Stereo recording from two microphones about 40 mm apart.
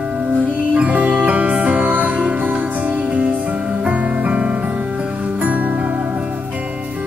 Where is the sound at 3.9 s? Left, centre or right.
Right.